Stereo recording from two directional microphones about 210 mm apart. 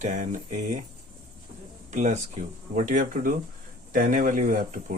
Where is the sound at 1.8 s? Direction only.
35° right (ahead or behind).